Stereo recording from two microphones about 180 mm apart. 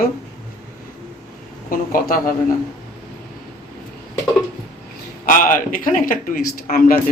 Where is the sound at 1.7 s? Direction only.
50° left (ahead or behind).